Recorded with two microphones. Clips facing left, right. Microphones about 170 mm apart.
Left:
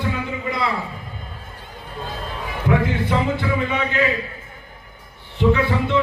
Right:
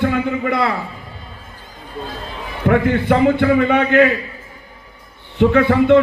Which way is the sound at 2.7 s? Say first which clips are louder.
Right 6 dB; 60° right (ahead or behind).